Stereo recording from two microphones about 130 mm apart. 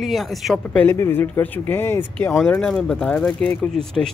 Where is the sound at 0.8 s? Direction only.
20° left (ahead or behind).